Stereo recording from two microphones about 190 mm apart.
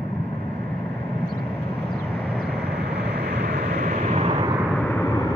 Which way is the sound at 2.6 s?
60° right (ahead or behind).